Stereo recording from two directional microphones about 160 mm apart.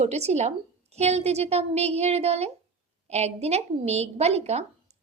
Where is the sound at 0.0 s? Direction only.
40° right (ahead or behind).